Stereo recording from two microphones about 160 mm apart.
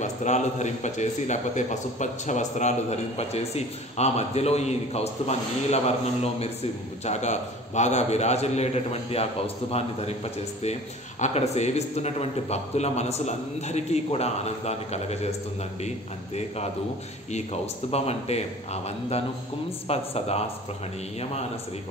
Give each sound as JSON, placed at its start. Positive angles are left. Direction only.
{"t": 0.0, "sound": "a man's voice", "side_deg": 50}
{"t": 16.3, "sound": "a man's voice", "side_deg": 45}